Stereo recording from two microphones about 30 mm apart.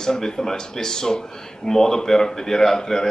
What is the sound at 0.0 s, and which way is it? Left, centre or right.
Speech, centre.